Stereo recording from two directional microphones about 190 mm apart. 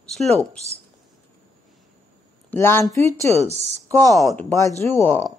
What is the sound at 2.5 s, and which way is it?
Speech, 10° left (ahead or behind).